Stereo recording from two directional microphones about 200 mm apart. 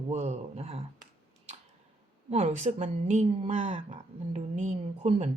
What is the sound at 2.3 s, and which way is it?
A woman's voice, 35° right (ahead or behind).